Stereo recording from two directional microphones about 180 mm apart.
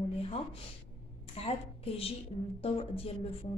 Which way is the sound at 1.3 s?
35° left (ahead or behind).